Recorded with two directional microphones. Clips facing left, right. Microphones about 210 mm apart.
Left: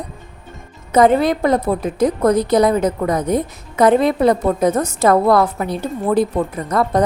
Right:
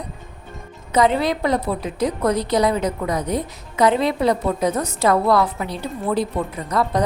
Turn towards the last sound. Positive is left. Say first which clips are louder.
# left 4 dB
turn(degrees=50)  # may be behind; listen again after turning